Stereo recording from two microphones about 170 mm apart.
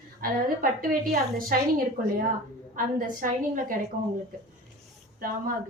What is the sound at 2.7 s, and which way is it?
A woman's voice, 50° right (ahead or behind).